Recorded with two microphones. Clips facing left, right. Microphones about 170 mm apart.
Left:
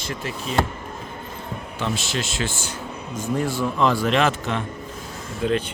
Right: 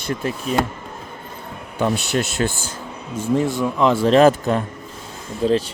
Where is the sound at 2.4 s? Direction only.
40° right (ahead or behind).